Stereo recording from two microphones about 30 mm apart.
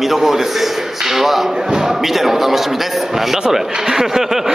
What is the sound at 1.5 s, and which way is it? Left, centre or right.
Speech, right.